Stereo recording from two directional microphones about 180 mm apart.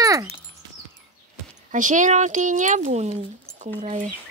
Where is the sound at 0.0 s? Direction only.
20° right (ahead or behind).